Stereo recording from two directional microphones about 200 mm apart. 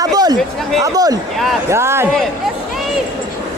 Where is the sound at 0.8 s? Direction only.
20° right (ahead or behind).